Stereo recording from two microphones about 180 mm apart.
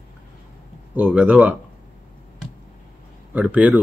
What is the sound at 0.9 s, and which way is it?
Speech, 10° right (ahead or behind).